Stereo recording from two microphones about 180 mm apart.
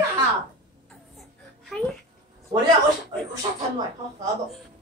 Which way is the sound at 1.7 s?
Centre (ahead or behind).